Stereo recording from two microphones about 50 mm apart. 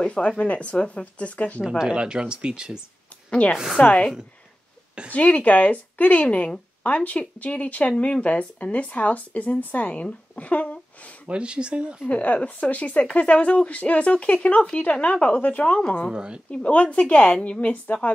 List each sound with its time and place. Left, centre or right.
0.0 s a sound: left
0.4 s speech: left
1.8 s speech: centre
3.3 s a woman's voice: left
5.1 s speech: left
11.2 s speech: right
12.1 s speech: left
16.1 s speech: centre
16.4 s speech: left